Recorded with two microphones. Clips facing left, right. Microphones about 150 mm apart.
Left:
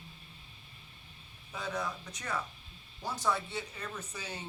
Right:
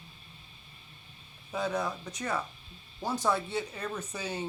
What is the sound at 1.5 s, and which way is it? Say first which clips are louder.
Speech: right 6 dB; 35° right (ahead or behind).